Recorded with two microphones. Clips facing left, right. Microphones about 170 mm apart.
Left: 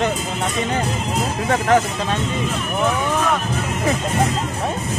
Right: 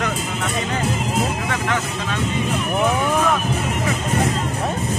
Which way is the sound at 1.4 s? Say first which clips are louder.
Left 6 dB; 35° left (ahead or behind).